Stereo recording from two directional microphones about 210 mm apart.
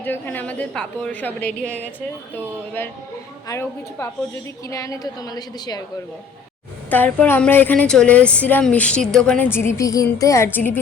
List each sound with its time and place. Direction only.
0.0 s a woman's voice: 10° left (ahead or behind)
6.9 s a woman's voice: 10° left (ahead or behind)